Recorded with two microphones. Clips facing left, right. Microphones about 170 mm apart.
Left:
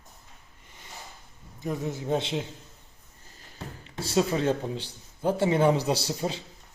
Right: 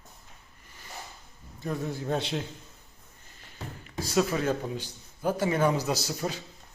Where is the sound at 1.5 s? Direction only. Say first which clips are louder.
Left 1 dB; 20° left (ahead or behind).